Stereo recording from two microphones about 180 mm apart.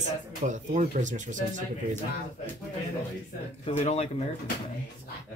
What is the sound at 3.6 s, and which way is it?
Speech, 40° left (ahead or behind).